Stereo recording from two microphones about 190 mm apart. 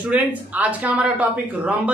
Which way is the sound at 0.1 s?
5° right (ahead or behind).